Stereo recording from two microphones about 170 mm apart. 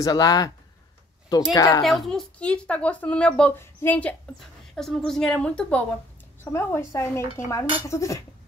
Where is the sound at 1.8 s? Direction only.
Centre (ahead or behind); by 8.2 s 20° left (ahead or behind).